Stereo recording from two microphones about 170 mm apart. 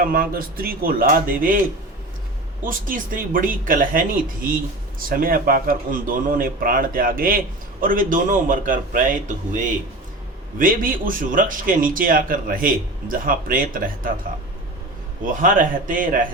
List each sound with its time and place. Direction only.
0.0 s speech: 55° right (ahead or behind)
2.6 s speech: 55° right (ahead or behind)
10.6 s speech: 55° right (ahead or behind)
15.2 s speech: 50° right (ahead or behind)